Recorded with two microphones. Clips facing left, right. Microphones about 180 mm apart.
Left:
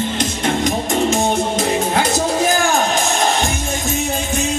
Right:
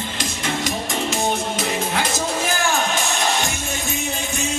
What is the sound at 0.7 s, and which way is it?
Music, 40° left (ahead or behind).